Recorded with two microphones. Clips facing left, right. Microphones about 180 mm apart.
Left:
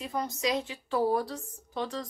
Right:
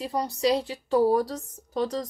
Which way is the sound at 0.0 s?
35° right (ahead or behind).